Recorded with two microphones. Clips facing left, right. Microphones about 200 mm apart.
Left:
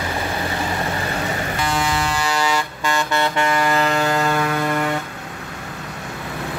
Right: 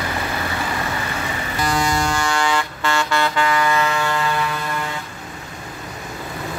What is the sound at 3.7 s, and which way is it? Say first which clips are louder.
Music: left 2 dB; 40° left (ahead or behind).